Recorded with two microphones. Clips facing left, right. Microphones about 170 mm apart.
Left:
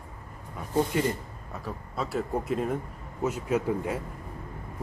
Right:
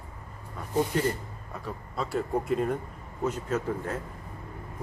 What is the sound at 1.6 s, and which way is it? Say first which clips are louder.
Speech: even; centre (ahead or behind).